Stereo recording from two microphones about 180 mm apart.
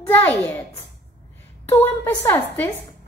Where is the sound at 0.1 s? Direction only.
10° left (ahead or behind).